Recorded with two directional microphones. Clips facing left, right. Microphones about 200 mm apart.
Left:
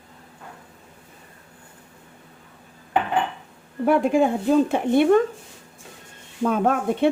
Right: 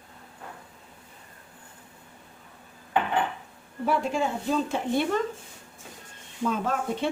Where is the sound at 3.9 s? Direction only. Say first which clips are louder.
Left 8 dB; 55° left (ahead or behind).